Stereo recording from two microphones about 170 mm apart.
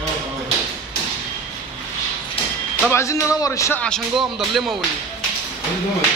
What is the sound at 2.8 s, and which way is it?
Speech, 15° left (ahead or behind).